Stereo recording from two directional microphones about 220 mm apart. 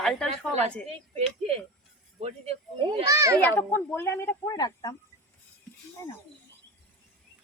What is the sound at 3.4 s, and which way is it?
Speech, 10° left (ahead or behind).